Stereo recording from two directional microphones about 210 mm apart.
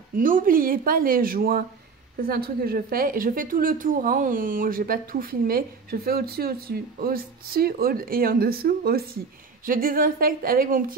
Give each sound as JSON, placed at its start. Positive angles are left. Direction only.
{"t": 0.1, "sound": "a woman's voice", "side_deg": -40}